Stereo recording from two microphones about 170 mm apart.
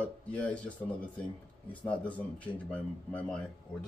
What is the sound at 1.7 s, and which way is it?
Speech, 10° left (ahead or behind).